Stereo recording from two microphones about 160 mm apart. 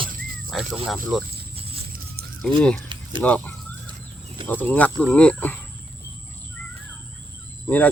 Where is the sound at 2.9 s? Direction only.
30° right (ahead or behind).